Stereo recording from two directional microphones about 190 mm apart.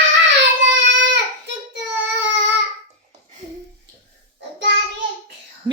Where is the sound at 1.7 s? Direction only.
70° right (ahead or behind).